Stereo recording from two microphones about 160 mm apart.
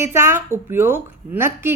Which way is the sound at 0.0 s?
15° right (ahead or behind).